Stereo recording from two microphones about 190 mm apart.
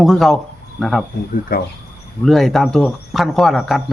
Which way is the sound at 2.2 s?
Centre (ahead or behind).